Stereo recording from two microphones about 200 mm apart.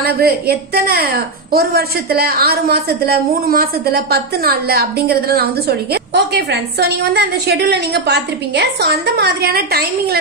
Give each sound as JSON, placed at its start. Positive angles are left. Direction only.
{"t": 0.0, "sound": "a woman's voice", "side_deg": -50}